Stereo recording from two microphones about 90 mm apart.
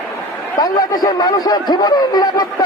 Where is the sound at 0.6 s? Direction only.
45° left (ahead or behind).